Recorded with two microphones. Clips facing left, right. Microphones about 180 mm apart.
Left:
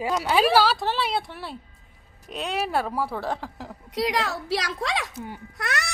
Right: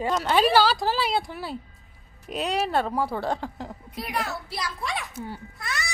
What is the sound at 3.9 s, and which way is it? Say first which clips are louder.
A woman's voice: left 6 dB; 90° left.